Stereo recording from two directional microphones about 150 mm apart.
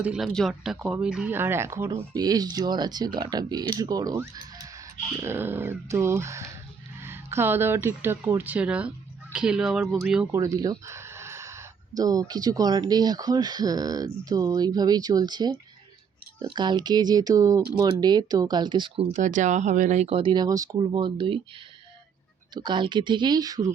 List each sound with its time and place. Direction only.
0.0 s speech: 5° right (ahead or behind)
10.3 s speech: 20° right (ahead or behind)
19.1 s speech: 55° right (ahead or behind); by 21.4 s 35° right (ahead or behind)
22.5 s speech: 30° right (ahead or behind)